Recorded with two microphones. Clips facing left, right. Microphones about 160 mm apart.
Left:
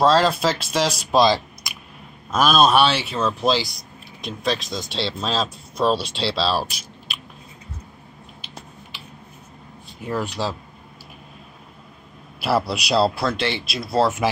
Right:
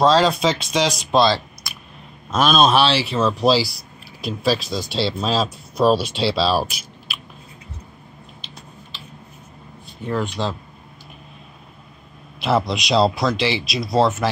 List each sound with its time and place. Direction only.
0.0 s speech: 5° left (ahead or behind)
2.3 s speech: 5° left (ahead or behind)
8.9 s a sound: 10° left (ahead or behind)
10.0 s speech: 10° left (ahead or behind)
12.4 s speech: 5° left (ahead or behind)